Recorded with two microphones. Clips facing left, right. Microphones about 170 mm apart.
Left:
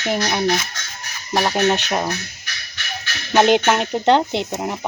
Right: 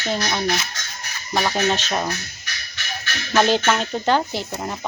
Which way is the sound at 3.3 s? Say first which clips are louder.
Left 3 dB; 20° left (ahead or behind).